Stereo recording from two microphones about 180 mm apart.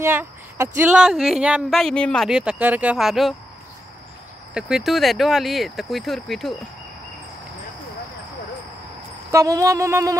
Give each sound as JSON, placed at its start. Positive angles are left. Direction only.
{"t": 0.0, "sound": "speech", "side_deg": -15}
{"t": 4.6, "sound": "speech", "side_deg": -5}
{"t": 9.3, "sound": "a sound", "side_deg": -20}